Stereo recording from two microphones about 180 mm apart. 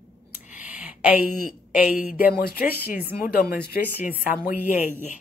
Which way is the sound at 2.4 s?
55° left (ahead or behind).